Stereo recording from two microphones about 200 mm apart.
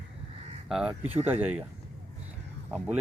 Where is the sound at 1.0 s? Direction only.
30° right (ahead or behind).